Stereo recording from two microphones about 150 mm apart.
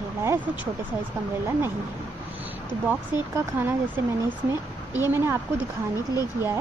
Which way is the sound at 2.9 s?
15° right (ahead or behind).